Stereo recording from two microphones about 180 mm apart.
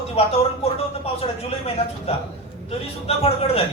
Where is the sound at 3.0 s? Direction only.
35° left (ahead or behind).